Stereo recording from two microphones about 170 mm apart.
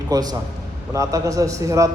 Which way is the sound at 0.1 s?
20° right (ahead or behind).